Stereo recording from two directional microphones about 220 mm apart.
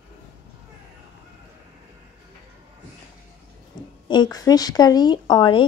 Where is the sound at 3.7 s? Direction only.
20° left (ahead or behind).